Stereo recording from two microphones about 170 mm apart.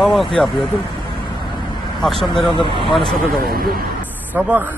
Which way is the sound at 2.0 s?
Centre (ahead or behind).